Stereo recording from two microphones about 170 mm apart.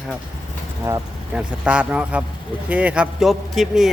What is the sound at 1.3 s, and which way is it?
Speech, 5° right (ahead or behind).